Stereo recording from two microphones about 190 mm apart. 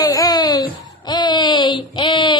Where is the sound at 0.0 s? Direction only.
20° left (ahead or behind).